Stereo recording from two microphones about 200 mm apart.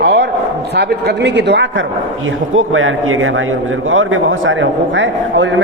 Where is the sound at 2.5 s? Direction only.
85° right; by 5.6 s 65° right (ahead or behind).